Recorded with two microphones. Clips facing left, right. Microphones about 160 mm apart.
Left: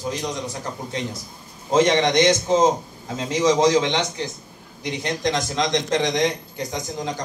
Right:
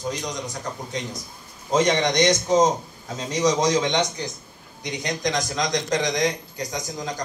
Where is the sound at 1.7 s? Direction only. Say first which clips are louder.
Left 3 dB; 25° left (ahead or behind).